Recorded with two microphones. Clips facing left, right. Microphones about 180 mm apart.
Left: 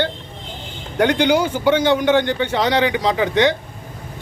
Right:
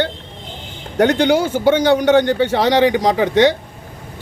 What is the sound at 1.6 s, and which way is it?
A man's voice, 45° right (ahead or behind).